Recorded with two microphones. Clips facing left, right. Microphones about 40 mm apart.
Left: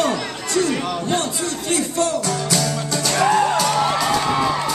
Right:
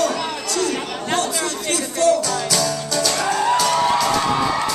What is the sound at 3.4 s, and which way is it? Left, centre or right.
Music, centre.